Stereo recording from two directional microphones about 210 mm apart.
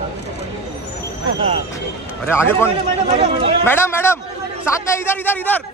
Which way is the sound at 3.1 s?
25° right (ahead or behind).